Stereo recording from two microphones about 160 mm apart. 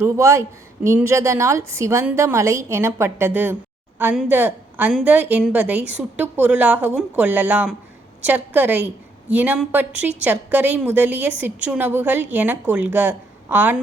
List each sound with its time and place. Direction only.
0.0 s a woman's voice: 15° right (ahead or behind)